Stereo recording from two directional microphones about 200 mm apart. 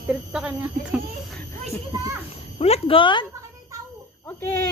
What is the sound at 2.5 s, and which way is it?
Speech, 30° left (ahead or behind).